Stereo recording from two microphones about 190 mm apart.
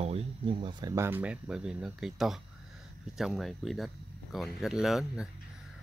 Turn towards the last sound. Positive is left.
turn(degrees=0)  # may be behind; listen again after turning